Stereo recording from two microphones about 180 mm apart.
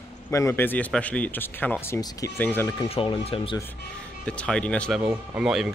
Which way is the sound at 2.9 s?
30° left (ahead or behind).